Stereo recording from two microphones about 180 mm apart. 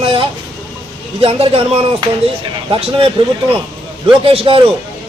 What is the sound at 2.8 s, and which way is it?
A man's voice, 30° right (ahead or behind).